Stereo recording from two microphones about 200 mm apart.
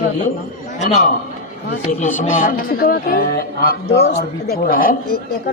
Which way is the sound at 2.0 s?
40° left (ahead or behind).